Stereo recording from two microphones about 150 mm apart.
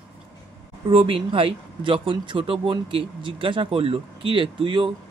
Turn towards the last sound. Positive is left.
turn(degrees=-35)  # may be behind; listen again after turning